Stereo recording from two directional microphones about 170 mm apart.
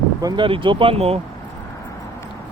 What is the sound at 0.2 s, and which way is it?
Speech, 25° right (ahead or behind).